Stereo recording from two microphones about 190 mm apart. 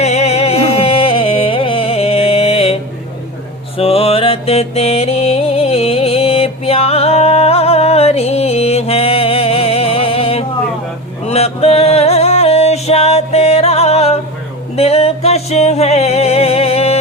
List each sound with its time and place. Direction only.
0.0 s music: 35° left (ahead or behind)
3.8 s music: 30° left (ahead or behind)